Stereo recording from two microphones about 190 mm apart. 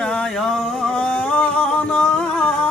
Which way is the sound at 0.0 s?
5° left (ahead or behind).